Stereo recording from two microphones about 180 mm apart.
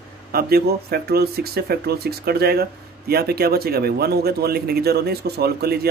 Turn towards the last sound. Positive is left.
turn(degrees=-60)  # may be behind; listen again after turning